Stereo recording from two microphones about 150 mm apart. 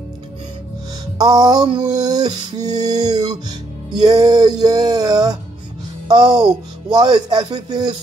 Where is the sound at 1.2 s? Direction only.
25° right (ahead or behind).